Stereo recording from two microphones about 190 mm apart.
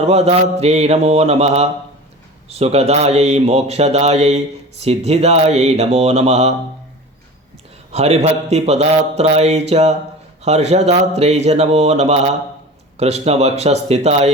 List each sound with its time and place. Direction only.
0.0 s speech: 35° right (ahead or behind)
7.9 s speech: 35° right (ahead or behind)